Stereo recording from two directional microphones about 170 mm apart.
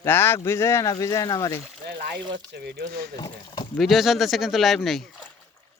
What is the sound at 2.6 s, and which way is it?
Speech, 80° right.